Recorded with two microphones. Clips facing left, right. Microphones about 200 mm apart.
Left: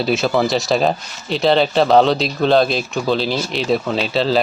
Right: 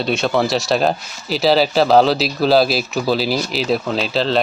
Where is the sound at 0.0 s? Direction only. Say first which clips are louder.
Left 1 dB; centre (ahead or behind).